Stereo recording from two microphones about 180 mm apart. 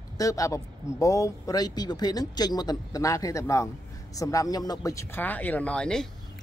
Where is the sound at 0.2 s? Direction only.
20° left (ahead or behind).